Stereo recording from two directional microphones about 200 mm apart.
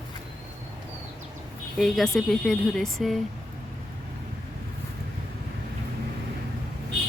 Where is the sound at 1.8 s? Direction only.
Centre (ahead or behind).